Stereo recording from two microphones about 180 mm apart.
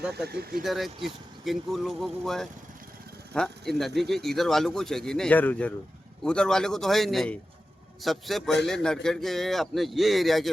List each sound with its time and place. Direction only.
0.3 s speech: 60° right (ahead or behind)
0.6 s speech: centre (ahead or behind)